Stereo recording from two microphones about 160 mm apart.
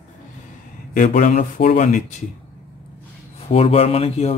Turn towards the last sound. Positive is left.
turn(degrees=40)  # may be behind; listen again after turning